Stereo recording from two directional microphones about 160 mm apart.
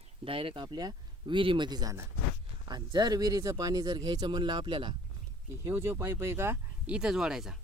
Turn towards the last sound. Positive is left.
turn(degrees=-5)  # may be behind; listen again after turning